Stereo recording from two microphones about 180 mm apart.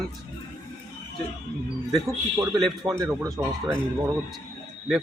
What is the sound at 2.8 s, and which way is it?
Speech, 20° right (ahead or behind).